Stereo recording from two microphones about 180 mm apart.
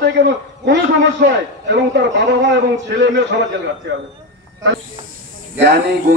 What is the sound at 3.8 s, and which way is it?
Speech, 70° right (ahead or behind).